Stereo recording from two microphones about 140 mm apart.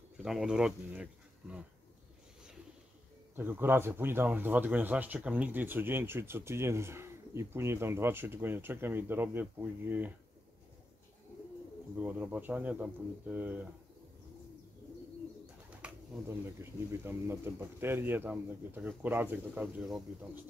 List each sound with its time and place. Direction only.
0.2 s speech: 5° right (ahead or behind)
3.3 s a man's voice: 15° right (ahead or behind)
12.0 s a man's voice: 10° right (ahead or behind)
15.8 s a man's voice: 15° right (ahead or behind)